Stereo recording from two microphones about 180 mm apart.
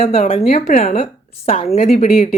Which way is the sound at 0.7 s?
45° left (ahead or behind).